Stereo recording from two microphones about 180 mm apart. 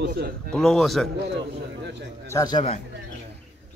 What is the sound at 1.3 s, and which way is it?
Speech, 75° right (ahead or behind).